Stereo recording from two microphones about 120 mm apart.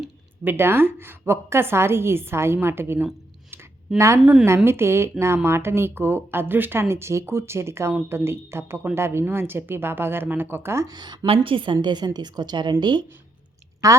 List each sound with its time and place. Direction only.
0.4 s speech: 20° right (ahead or behind)
3.5 s a sound: 25° right (ahead or behind)
4.2 s a woman's voice: 5° right (ahead or behind)
4.4 s speech: 20° right (ahead or behind)
10.9 s a woman's voice: 40° right (ahead or behind)